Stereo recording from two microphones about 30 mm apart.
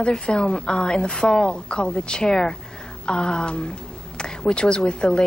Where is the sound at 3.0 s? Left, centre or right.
Left.